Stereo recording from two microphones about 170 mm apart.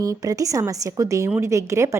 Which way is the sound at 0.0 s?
20° right (ahead or behind).